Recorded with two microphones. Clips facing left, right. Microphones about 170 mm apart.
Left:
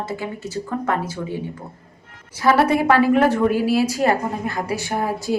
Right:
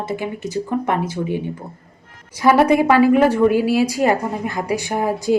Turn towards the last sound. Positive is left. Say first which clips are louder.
# right 3 dB
turn(degrees=-15)  # may be behind; listen again after turning